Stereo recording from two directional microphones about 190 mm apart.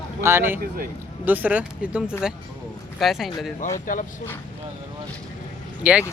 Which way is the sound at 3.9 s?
45° left (ahead or behind).